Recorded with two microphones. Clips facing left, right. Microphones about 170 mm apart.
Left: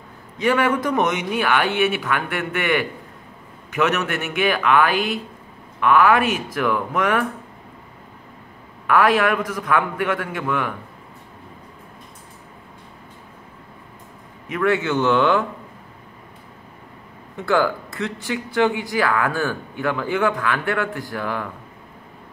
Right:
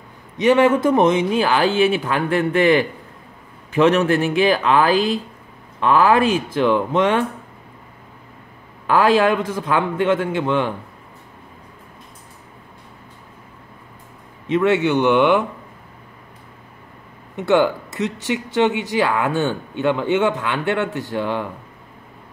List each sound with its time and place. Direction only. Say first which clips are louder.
0.4 s speech: right 5 dB; 25° right (ahead or behind)
8.8 s speech: right 2 dB; 30° right (ahead or behind)
14.5 s speech: right 4 dB; 20° right (ahead or behind)
17.4 s speech: right 3 dB; 20° right (ahead or behind)